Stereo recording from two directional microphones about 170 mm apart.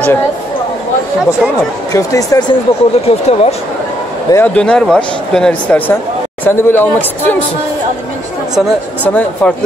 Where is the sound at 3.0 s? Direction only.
40° left (ahead or behind).